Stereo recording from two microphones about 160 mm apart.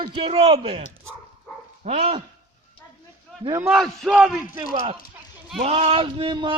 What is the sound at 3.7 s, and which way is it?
Speech, centre (ahead or behind).